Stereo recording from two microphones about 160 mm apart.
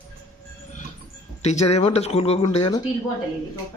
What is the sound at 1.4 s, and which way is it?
Speech, 45° left (ahead or behind).